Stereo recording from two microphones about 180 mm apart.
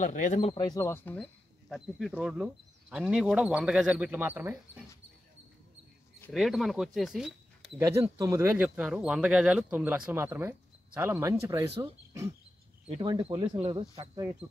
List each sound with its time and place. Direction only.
0.0 s speech: 45° left (ahead or behind)
0.7 s speech: 15° left (ahead or behind); by 4.8 s 10° right (ahead or behind)
6.3 s speech: centre (ahead or behind)
8.2 s speech: 15° right (ahead or behind)
12.8 s speech: 30° right (ahead or behind)